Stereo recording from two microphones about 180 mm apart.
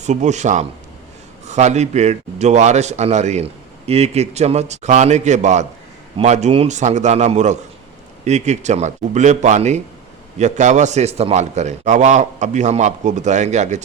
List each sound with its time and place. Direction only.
0.0 s a man's voice: 40° right (ahead or behind)